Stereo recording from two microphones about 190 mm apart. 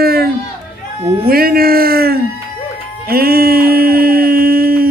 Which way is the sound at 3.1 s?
50° right (ahead or behind).